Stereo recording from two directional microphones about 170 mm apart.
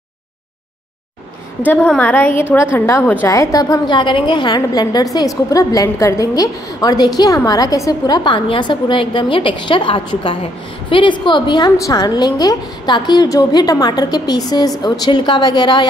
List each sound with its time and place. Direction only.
1.7 s a woman's voice: 10° left (ahead or behind); by 15.9 s 25° left (ahead or behind)